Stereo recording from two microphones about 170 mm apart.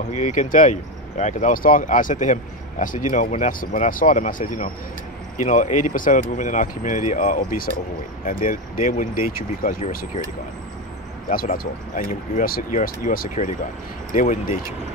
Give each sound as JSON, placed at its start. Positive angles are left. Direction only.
{"t": 0.1, "sound": "speech", "side_deg": 45}
{"t": 11.2, "sound": "speech", "side_deg": 55}